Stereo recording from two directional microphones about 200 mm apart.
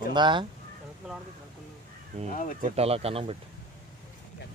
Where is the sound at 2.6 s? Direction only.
30° right (ahead or behind).